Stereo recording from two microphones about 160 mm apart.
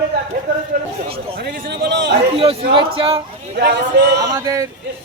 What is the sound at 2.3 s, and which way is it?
Speech, 35° right (ahead or behind).